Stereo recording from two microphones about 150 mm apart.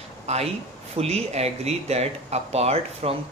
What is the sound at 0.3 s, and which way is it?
Speech, 45° right (ahead or behind).